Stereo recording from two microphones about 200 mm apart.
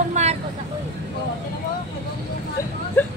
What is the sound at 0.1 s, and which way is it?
Vehicle, 35° right (ahead or behind).